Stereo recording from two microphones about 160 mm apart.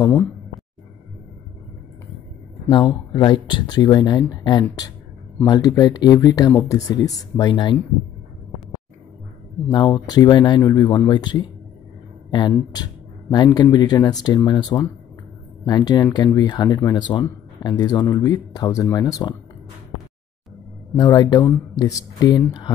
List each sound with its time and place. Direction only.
0.0 s speech: 15° left (ahead or behind)
2.7 s speech: 30° left (ahead or behind)
9.7 s speech: 25° left (ahead or behind)
21.0 s speech: 25° left (ahead or behind)